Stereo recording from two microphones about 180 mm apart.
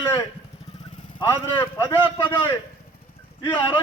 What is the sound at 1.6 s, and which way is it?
Speech, 15° left (ahead or behind).